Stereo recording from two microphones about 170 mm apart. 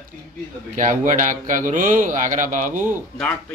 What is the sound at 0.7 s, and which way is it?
A man's voice, 50° right (ahead or behind).